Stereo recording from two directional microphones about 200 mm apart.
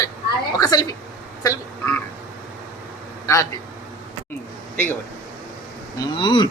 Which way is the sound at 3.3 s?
15° left (ahead or behind).